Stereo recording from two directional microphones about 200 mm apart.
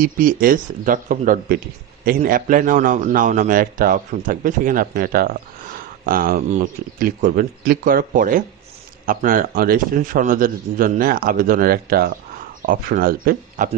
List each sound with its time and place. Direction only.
0.0 s a man's voice: 45° right (ahead or behind)